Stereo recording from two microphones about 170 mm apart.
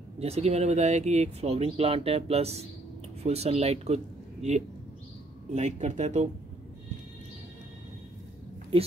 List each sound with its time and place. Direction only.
0.2 s speech: 40° right (ahead or behind)